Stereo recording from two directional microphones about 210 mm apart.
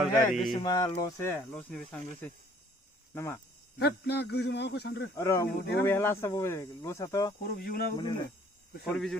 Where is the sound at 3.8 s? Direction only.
50° left (ahead or behind).